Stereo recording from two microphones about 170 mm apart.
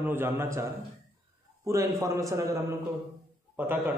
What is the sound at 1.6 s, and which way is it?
A man's voice, 15° right (ahead or behind).